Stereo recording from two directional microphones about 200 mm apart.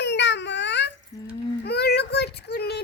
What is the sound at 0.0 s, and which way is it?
Baby cry, 60° left (ahead or behind).